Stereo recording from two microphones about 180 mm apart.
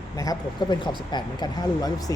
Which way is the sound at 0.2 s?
20° left (ahead or behind).